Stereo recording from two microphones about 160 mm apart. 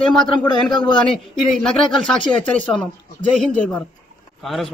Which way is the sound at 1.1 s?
5° left (ahead or behind).